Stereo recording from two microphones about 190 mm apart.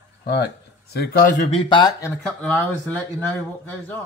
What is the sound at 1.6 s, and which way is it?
Speech, 25° left (ahead or behind).